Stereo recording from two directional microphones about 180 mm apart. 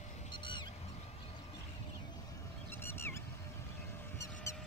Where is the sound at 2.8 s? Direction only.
10° left (ahead or behind).